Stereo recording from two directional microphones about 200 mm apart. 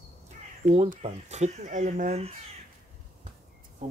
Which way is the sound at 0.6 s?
35° right (ahead or behind).